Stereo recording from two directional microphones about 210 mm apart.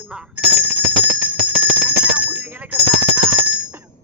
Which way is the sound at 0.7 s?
10° right (ahead or behind).